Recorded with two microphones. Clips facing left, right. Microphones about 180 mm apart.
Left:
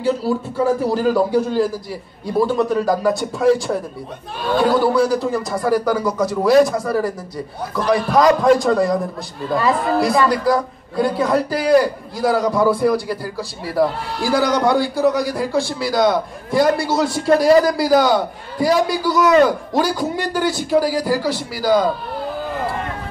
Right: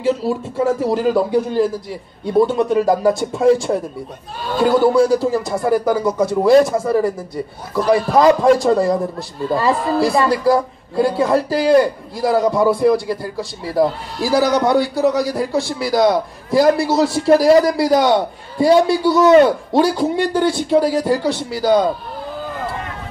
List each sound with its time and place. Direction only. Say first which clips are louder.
0.0 s a man's voice: right 1 dB; 25° right (ahead or behind)
4.6 s a man's voice: right 4 dB; 25° right (ahead or behind)